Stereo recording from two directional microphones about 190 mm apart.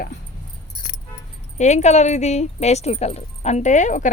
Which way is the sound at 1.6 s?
35° left (ahead or behind).